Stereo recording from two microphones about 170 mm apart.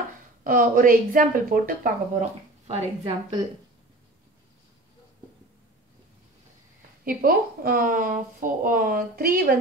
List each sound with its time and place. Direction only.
0.4 s a woman's voice: 55° right (ahead or behind)
7.1 s speech: 60° right (ahead or behind)